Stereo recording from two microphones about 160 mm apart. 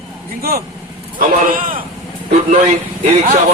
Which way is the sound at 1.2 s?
60° right (ahead or behind).